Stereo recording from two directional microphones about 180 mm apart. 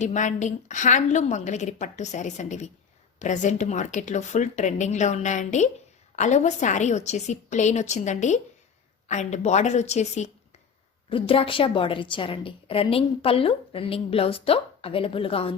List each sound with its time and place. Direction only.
0.0 s a woman's voice: 40° left (ahead or behind)